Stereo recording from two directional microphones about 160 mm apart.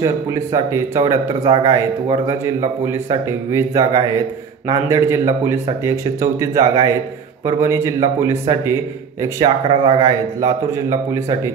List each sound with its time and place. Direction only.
0.0 s speech: 20° right (ahead or behind)